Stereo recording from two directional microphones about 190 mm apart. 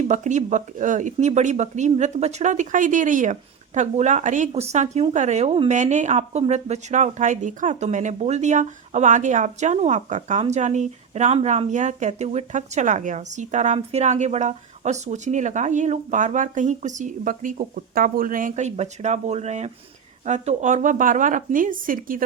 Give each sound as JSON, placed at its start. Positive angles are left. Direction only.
{"t": 0.1, "sound": "speech", "side_deg": -40}